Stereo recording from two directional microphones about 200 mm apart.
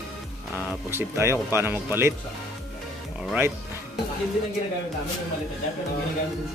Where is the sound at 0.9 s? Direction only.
10° right (ahead or behind).